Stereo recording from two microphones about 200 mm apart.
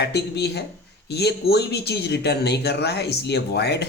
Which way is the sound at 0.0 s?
55° left (ahead or behind).